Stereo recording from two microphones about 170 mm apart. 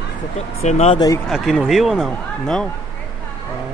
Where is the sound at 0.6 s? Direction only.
40° left (ahead or behind).